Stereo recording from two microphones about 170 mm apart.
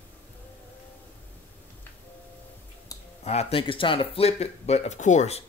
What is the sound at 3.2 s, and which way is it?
Speech, 40° left (ahead or behind).